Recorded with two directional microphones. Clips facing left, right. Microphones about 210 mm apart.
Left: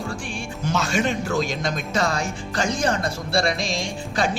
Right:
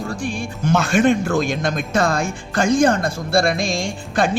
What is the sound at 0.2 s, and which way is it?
Speech, 40° right (ahead or behind).